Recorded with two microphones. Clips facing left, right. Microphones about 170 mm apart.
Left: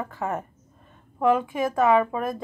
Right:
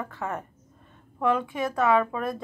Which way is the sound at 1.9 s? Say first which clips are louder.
Left 2 dB; 15° left (ahead or behind).